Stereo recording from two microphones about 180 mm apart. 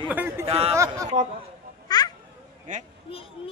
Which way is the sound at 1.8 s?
20° left (ahead or behind).